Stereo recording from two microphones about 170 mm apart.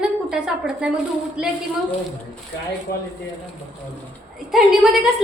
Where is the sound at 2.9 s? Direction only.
65° left (ahead or behind).